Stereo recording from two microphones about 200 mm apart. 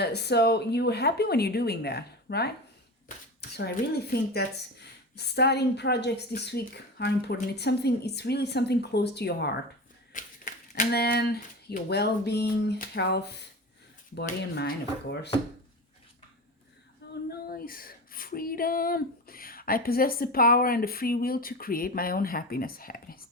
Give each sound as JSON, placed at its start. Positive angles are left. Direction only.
{"t": 0.0, "sound": "a woman's voice", "side_deg": 55}
{"t": 3.6, "sound": "a woman's voice", "side_deg": 50}
{"t": 10.2, "sound": "a woman's voice", "side_deg": 40}
{"t": 17.2, "sound": "female singing", "side_deg": 50}